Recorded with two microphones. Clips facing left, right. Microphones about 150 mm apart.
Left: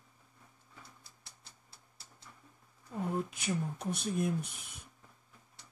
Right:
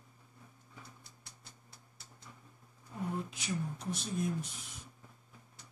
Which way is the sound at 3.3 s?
55° left (ahead or behind).